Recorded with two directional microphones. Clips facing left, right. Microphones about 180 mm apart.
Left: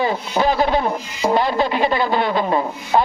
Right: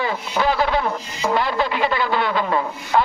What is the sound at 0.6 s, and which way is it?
Speech, 35° left (ahead or behind).